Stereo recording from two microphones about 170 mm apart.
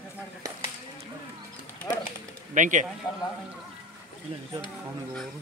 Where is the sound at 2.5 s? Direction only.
45° right (ahead or behind).